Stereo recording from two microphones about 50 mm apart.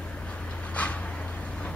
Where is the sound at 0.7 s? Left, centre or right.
Left.